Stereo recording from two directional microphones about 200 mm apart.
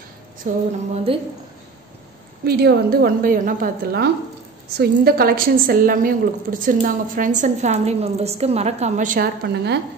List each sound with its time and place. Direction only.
0.5 s a woman's voice: 40° right (ahead or behind)
1.1 s a woman's voice: 30° right (ahead or behind)
2.4 s a woman's voice: 50° right (ahead or behind)